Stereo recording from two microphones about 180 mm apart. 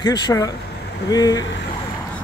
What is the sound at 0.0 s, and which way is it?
Speech, 20° left (ahead or behind).